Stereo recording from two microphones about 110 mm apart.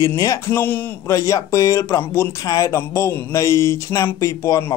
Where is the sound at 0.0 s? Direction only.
30° left (ahead or behind).